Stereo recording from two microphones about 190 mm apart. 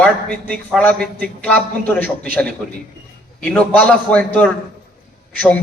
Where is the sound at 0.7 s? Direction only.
5° left (ahead or behind).